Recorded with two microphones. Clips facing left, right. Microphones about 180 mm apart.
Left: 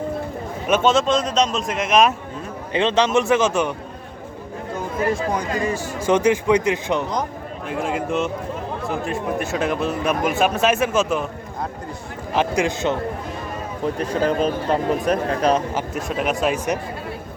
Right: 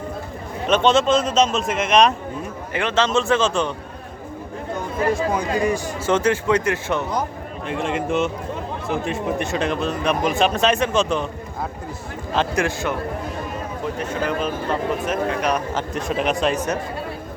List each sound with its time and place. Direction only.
0.7 s speech: 5° left (ahead or behind)
2.7 s a man's voice: 20° left (ahead or behind)
5.1 s a man's voice: 5° right (ahead or behind)
6.0 s a man's voice: 15° left (ahead or behind)
7.7 s speech: centre (ahead or behind)
12.3 s a man's voice: 15° left (ahead or behind)
13.8 s speech: 35° left (ahead or behind)
15.7 s speech: centre (ahead or behind)